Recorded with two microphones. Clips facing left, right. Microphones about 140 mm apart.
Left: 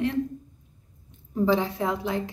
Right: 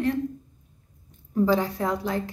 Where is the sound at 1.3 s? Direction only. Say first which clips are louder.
Right 1 dB; 20° left (ahead or behind).